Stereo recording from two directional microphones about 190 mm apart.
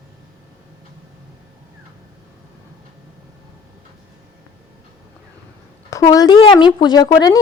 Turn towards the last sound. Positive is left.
turn(degrees=20)  # may be behind; listen again after turning